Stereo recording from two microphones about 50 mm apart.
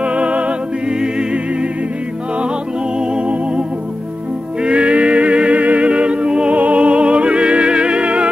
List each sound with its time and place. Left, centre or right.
0.0 s music: right
3.0 s music: right